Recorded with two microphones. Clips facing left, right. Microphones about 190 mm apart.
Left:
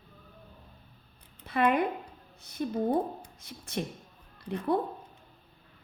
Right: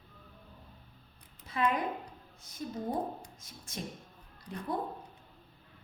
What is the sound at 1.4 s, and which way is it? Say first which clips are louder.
A woman's voice: left 5 dB; 65° left (ahead or behind).